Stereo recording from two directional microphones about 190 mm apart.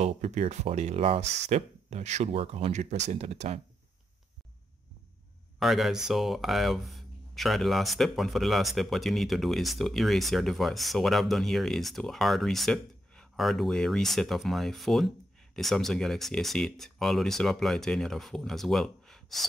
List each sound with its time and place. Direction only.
0.0 s speech: 35° right (ahead or behind)
1.2 s speech: 65° right (ahead or behind)
1.5 s speech: 35° right (ahead or behind)
5.6 s speech: centre (ahead or behind)